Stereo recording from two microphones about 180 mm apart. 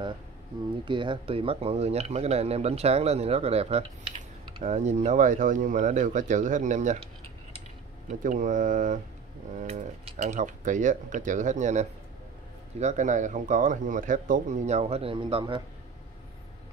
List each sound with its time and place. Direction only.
0.8 s speech: 25° right (ahead or behind); by 7.0 s 45° right (ahead or behind)
8.2 s speech: 45° right (ahead or behind); by 15.6 s 30° right (ahead or behind)